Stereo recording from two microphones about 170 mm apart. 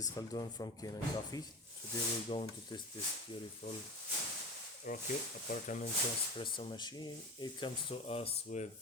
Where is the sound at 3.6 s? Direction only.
55° left (ahead or behind).